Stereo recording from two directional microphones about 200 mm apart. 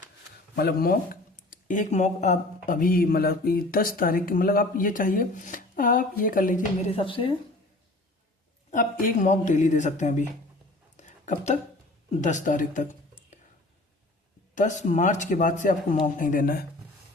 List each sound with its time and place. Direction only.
0.5 s speech: 50° left (ahead or behind)
6.9 s speech: 25° left (ahead or behind)
8.7 s speech: 45° left (ahead or behind)
10.9 s a sound: 35° left (ahead or behind)
12.2 s speech: 40° left (ahead or behind)
14.5 s speech: 40° left (ahead or behind)